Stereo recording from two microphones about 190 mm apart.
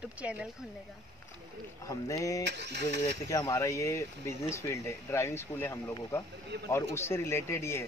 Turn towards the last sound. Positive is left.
turn(degrees=15)  # may be behind; listen again after turning